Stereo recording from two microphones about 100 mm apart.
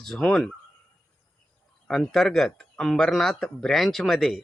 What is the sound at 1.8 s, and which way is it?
Speech, 5° left (ahead or behind).